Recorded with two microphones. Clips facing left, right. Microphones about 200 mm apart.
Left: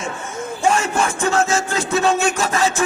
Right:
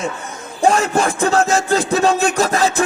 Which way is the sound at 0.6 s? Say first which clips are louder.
Right 4 dB; 35° right (ahead or behind).